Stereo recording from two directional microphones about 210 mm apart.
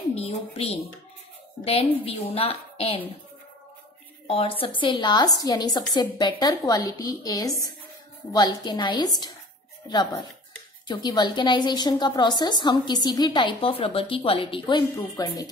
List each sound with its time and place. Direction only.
0.1 s a woman's voice: 30° left (ahead or behind)
4.3 s a woman's voice: 25° left (ahead or behind)
10.9 s a woman's voice: 20° left (ahead or behind)